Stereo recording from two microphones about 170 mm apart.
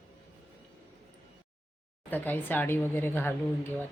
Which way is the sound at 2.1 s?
10° left (ahead or behind).